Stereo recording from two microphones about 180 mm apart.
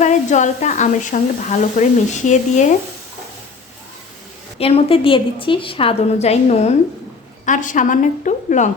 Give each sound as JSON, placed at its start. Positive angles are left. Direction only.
{"t": 0.0, "sound": "speech", "side_deg": 40}
{"t": 4.5, "sound": "a woman's voice", "side_deg": 35}